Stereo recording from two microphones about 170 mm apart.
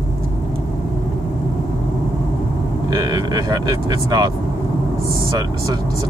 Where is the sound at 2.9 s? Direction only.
25° right (ahead or behind).